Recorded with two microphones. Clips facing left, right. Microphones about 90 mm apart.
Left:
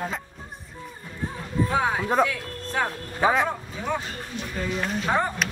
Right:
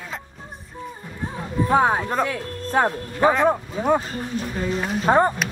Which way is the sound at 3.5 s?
45° right (ahead or behind).